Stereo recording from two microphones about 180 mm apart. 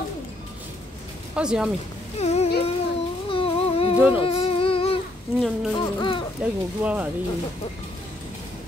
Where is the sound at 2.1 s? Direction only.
35° left (ahead or behind).